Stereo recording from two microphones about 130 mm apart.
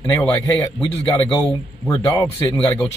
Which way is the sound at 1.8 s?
20° left (ahead or behind).